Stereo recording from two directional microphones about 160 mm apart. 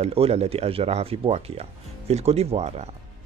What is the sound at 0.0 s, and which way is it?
Speech, 40° right (ahead or behind).